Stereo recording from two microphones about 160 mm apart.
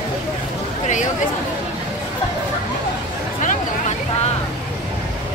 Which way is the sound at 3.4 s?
55° left (ahead or behind).